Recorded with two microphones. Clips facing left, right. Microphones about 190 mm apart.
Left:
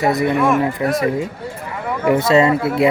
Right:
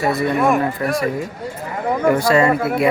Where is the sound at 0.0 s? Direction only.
20° left (ahead or behind).